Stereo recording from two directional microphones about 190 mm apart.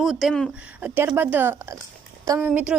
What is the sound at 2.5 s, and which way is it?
Speech, 5° right (ahead or behind).